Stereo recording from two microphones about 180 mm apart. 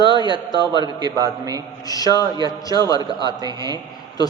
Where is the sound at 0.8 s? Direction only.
20° right (ahead or behind).